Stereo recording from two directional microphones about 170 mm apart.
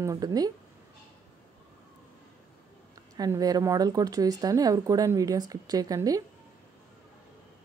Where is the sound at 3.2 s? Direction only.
20° right (ahead or behind).